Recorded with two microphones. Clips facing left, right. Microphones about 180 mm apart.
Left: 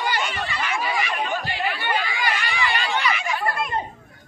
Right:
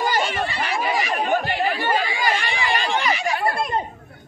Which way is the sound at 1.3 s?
55° right (ahead or behind).